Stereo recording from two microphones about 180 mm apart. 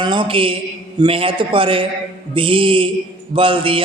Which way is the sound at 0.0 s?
25° right (ahead or behind).